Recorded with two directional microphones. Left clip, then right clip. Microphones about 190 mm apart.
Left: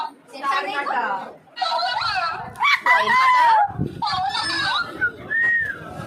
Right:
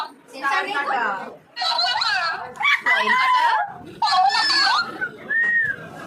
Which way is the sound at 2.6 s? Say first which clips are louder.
Left 2 dB; 15° left (ahead or behind).